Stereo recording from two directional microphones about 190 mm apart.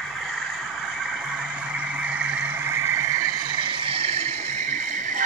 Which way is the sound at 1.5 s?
5° right (ahead or behind).